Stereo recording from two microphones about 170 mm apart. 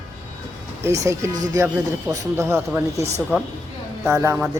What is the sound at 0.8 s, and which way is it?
Speech, 15° right (ahead or behind).